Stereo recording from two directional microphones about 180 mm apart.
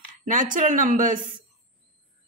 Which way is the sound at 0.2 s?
45° right (ahead or behind).